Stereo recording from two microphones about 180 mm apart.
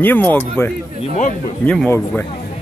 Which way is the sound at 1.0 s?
45° left (ahead or behind).